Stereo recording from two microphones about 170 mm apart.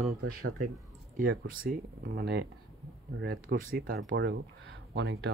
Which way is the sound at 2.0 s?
70° right (ahead or behind).